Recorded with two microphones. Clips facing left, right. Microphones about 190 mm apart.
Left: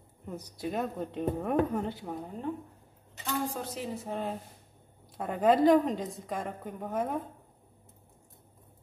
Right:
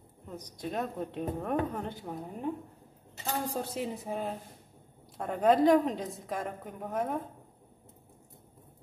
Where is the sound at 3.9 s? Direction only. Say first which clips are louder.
Left 1 dB; 10° right (ahead or behind).